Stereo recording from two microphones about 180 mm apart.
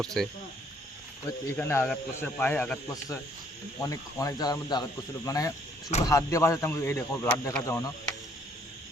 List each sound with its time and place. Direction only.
0.0 s speech: centre (ahead or behind)
1.5 s a man's voice: 10° left (ahead or behind)